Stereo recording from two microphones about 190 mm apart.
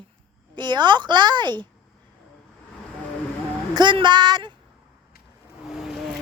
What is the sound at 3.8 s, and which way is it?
Speech, 25° right (ahead or behind).